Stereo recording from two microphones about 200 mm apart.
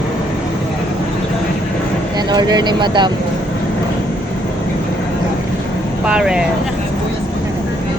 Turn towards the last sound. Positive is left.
turn(degrees=-5)  # may be behind; listen again after turning